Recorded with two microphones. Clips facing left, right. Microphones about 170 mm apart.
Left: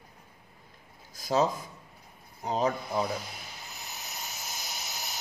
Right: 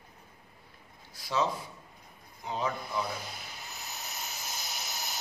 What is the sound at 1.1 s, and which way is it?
Speech, 45° left (ahead or behind).